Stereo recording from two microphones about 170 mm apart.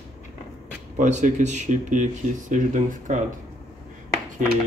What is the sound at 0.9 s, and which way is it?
Speech, 45° right (ahead or behind).